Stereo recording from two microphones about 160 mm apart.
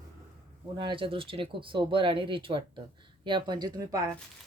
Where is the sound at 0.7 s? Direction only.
30° right (ahead or behind).